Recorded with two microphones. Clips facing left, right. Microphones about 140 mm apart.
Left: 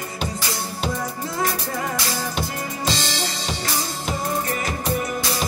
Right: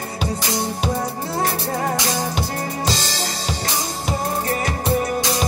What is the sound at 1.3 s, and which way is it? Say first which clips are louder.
Music: right 3 dB; 40° right (ahead or behind).